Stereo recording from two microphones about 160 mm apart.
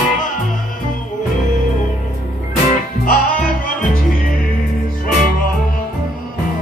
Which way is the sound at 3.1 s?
60° left (ahead or behind).